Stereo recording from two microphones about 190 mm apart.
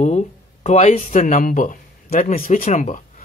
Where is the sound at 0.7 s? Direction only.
35° left (ahead or behind).